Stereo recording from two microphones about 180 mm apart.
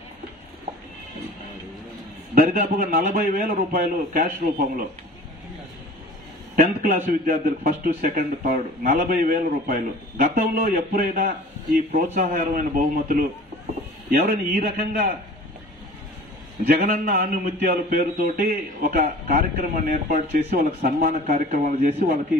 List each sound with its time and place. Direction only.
2.3 s a man's voice: 55° right (ahead or behind)
6.5 s a man's voice: 50° right (ahead or behind)
16.6 s a man's voice: 55° right (ahead or behind)